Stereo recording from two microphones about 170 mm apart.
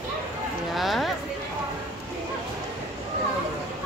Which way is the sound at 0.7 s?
Centre (ahead or behind).